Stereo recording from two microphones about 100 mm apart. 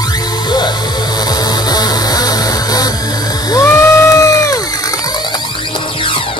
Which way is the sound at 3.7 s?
25° left (ahead or behind).